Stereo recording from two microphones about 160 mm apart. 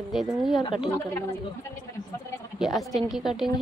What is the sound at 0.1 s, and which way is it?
Speech, centre (ahead or behind).